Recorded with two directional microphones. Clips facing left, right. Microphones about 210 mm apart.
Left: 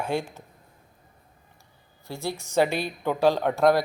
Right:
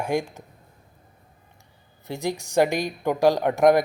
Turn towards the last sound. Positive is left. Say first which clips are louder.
# right 3 dB
turn(degrees=-15)  # may be behind; listen again after turning